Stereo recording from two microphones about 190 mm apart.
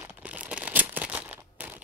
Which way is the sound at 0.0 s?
10° right (ahead or behind).